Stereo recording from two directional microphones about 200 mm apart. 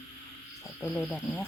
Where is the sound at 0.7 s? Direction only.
5° left (ahead or behind).